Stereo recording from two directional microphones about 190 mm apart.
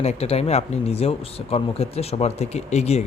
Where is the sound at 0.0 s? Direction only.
35° left (ahead or behind).